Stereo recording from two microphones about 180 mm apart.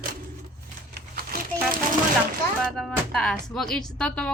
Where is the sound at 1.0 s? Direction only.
55° right (ahead or behind).